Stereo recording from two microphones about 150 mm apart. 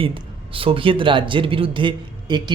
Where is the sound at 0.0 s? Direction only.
35° right (ahead or behind).